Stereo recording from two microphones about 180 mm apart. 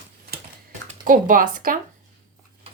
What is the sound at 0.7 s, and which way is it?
Speech, 45° right (ahead or behind).